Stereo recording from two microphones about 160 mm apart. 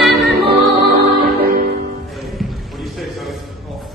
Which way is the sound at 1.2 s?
70° right (ahead or behind).